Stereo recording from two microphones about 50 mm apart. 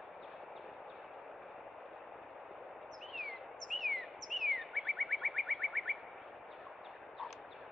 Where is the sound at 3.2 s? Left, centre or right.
Centre.